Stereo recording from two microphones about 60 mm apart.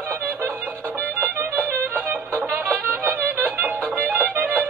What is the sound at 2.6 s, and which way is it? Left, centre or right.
Music, right.